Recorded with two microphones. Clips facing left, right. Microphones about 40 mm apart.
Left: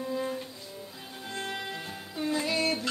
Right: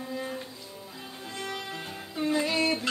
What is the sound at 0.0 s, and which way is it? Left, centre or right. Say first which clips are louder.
Music: left 3 dB; centre.